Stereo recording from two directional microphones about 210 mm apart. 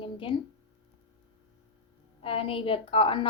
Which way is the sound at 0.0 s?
25° left (ahead or behind).